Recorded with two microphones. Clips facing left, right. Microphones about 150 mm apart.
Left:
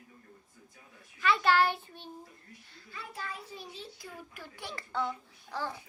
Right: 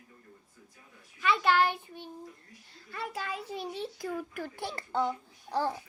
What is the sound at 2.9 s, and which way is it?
Speech, 75° right (ahead or behind).